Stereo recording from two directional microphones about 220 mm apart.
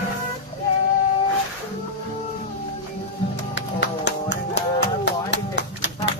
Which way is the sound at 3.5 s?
55° left (ahead or behind).